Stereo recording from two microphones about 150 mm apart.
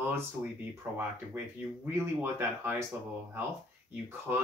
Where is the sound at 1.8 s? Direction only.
15° right (ahead or behind).